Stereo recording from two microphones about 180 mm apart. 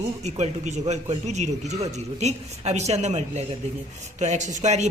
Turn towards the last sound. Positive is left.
turn(degrees=-40)  # may be behind; listen again after turning